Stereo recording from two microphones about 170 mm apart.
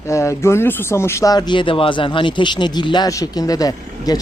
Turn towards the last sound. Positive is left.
turn(degrees=20)  # may be behind; listen again after turning